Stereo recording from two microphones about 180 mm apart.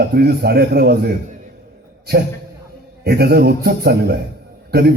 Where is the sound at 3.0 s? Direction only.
60° right (ahead or behind).